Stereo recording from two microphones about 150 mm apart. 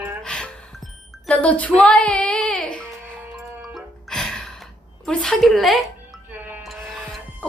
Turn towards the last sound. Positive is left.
turn(degrees=0)  # may be behind; listen again after turning